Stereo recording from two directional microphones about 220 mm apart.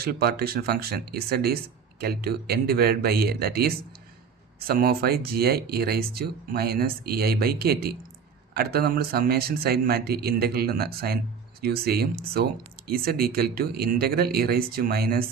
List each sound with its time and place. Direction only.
0.0 s speech: 45° right (ahead or behind)